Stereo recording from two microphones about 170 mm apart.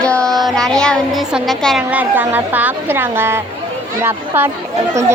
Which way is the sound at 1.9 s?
10° right (ahead or behind).